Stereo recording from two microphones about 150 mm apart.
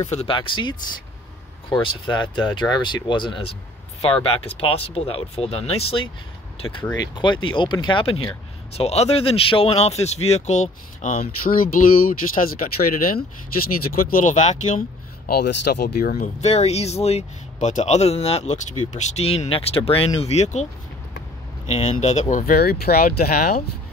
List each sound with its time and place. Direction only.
0.1 s speech: 40° left (ahead or behind)
6.9 s speech: 30° left (ahead or behind); by 14.8 s 55° left (ahead or behind)
15.2 s speech: 90° left
16.3 s speech: 45° left (ahead or behind)
21.6 s speech: 45° left (ahead or behind)
22.3 s speech: 80° left